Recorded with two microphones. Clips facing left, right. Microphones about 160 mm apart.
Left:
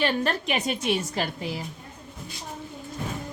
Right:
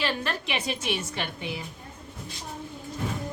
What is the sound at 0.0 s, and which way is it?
A woman's voice, 40° left (ahead or behind).